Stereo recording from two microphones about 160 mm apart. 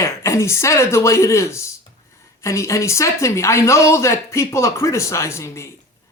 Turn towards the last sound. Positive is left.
turn(degrees=15)  # may be behind; listen again after turning